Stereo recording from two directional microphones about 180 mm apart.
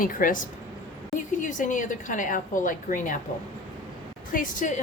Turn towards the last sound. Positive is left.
turn(degrees=45)  # may be behind; listen again after turning